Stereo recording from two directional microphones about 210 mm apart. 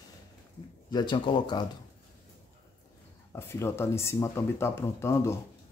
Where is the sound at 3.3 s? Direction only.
15° left (ahead or behind).